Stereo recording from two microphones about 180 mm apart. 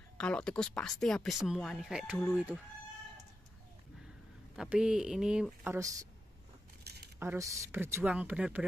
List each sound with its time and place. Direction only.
0.2 s speech: 5° left (ahead or behind)
4.6 s speech: 5° right (ahead or behind)
6.8 s a sound: 65° right (ahead or behind)
7.2 s speech: 15° right (ahead or behind)